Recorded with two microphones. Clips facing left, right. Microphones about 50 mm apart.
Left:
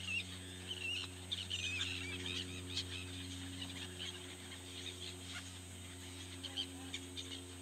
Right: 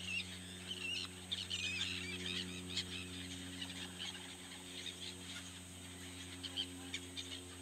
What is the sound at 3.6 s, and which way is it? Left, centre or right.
Fowl, centre.